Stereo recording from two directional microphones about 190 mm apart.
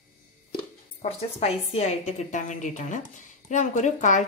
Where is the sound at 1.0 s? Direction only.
35° left (ahead or behind).